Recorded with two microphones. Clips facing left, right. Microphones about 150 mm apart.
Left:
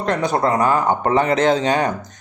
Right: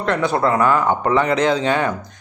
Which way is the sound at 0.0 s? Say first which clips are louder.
Even; 40° left (ahead or behind).